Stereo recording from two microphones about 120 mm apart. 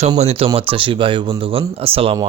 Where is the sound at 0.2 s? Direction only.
60° right (ahead or behind).